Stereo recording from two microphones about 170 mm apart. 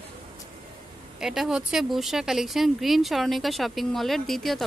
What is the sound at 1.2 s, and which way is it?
Speech, centre (ahead or behind).